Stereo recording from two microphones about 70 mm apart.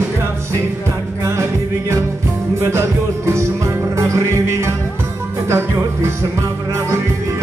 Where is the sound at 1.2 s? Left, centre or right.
Right.